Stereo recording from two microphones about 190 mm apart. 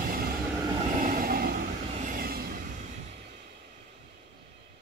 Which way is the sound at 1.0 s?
50° right (ahead or behind).